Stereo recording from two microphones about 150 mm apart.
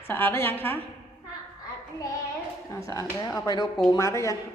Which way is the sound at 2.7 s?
20° left (ahead or behind).